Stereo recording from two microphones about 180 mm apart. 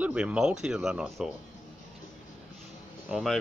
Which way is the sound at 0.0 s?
5° right (ahead or behind).